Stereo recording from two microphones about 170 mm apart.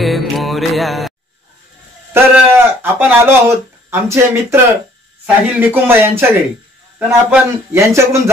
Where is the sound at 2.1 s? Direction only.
10° right (ahead or behind).